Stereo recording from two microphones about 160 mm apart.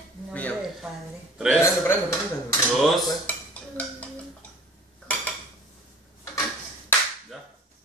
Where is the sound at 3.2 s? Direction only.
10° left (ahead or behind).